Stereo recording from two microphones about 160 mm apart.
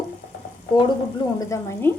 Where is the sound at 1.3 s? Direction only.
15° left (ahead or behind).